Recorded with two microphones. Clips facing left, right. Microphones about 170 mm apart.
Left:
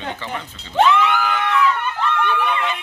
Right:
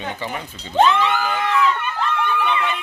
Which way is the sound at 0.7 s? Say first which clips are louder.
Even; 30° right (ahead or behind).